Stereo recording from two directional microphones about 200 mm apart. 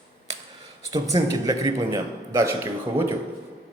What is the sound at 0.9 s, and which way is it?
A man's voice, 15° right (ahead or behind).